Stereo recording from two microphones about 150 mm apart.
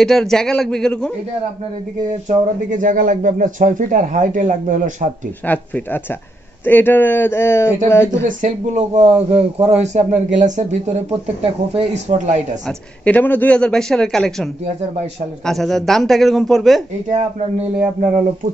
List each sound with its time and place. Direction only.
0.0 s a man's voice: 5° left (ahead or behind)
2.2 s speech: 60° right (ahead or behind)
5.5 s speech: 10° left (ahead or behind)
8.3 s a man's voice: 55° right (ahead or behind)
11.4 s a man's voice: 40° right (ahead or behind)
12.6 s a man's voice: 10° left (ahead or behind)